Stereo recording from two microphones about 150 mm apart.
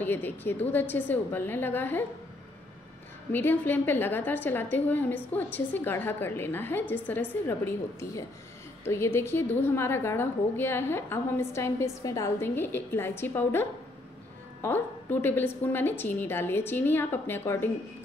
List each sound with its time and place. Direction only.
0.0 s a woman's voice: 10° left (ahead or behind)
3.3 s a woman's voice: 15° left (ahead or behind)